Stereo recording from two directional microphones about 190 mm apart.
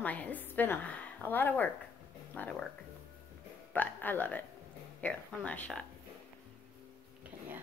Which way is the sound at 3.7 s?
10° left (ahead or behind).